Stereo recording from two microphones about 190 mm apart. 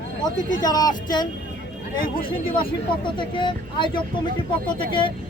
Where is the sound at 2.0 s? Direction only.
50° left (ahead or behind).